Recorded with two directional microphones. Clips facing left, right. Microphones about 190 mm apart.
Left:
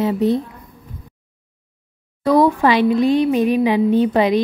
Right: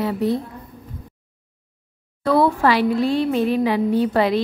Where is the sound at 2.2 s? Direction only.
15° left (ahead or behind).